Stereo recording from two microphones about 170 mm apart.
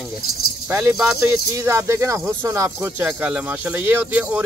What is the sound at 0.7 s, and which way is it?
Speech, 15° right (ahead or behind).